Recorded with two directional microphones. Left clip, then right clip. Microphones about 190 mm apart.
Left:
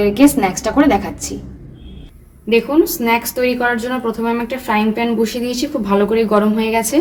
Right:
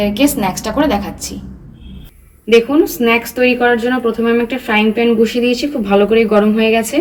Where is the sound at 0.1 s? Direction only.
35° left (ahead or behind).